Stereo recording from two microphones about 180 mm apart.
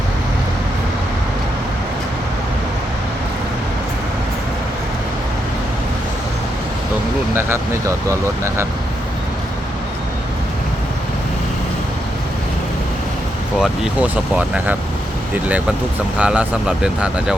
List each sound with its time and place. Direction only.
7.3 s speech: 15° right (ahead or behind)
13.6 s speech: 5° right (ahead or behind)
16.1 s speech: 5° right (ahead or behind)